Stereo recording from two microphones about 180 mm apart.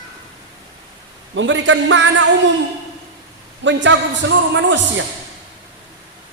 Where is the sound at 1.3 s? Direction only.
90° right.